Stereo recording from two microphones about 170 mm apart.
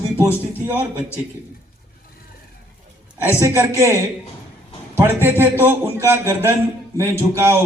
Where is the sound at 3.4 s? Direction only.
15° right (ahead or behind).